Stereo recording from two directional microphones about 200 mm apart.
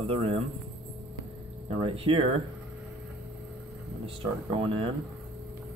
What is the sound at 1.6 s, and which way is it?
Speech, 30° right (ahead or behind).